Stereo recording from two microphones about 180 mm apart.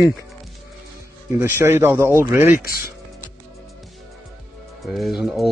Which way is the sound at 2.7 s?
55° left (ahead or behind).